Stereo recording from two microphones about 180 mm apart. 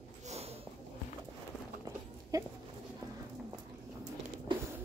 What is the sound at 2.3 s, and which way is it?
Speech, 20° right (ahead or behind).